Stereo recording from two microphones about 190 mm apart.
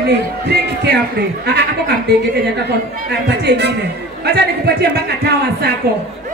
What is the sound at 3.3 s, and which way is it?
Speech, 60° right (ahead or behind).